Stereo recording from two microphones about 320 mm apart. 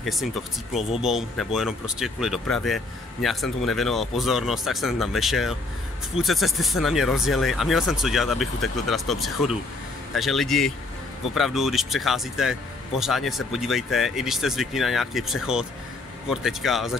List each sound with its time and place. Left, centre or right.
0.0 s speech: centre